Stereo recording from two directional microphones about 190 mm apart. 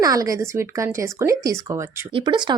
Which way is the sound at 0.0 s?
20° right (ahead or behind).